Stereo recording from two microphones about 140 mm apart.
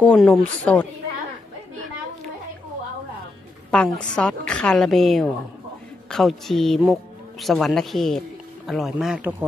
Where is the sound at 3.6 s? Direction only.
5° left (ahead or behind).